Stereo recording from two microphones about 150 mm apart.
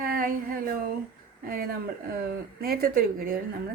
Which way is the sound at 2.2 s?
85° right.